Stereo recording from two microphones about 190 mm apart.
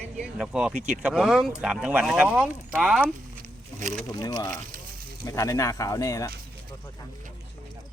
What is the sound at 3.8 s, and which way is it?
Speech, 40° right (ahead or behind).